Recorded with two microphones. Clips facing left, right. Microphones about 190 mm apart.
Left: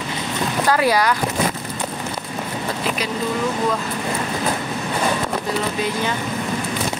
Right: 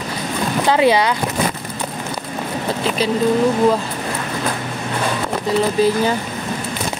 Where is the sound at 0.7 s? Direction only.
25° right (ahead or behind).